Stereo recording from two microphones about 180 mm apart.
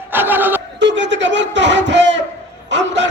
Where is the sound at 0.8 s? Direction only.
85° right.